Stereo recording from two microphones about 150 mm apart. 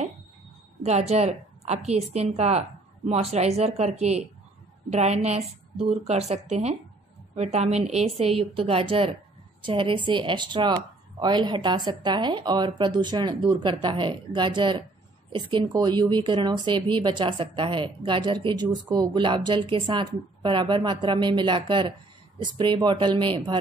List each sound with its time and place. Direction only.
0.8 s a woman's voice: 45° right (ahead or behind)